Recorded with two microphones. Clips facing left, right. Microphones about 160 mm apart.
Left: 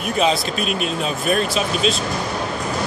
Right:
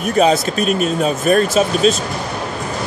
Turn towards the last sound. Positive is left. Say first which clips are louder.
# right 6 dB
turn(degrees=-45)  # may be behind; listen again after turning